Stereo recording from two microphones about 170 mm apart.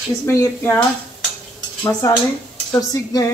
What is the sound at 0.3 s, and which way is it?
Speech, 15° left (ahead or behind).